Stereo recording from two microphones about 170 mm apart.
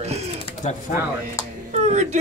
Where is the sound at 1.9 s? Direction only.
45° right (ahead or behind).